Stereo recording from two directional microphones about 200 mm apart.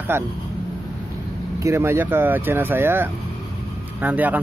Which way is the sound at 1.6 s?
15° right (ahead or behind).